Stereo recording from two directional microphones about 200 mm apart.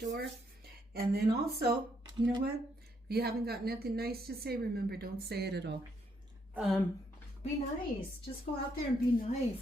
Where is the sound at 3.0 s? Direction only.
50° right (ahead or behind).